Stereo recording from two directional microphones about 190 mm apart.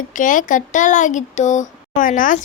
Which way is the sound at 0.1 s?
45° left (ahead or behind).